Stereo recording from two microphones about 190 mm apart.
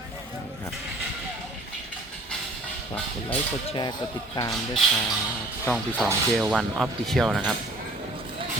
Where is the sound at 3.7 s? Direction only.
20° left (ahead or behind).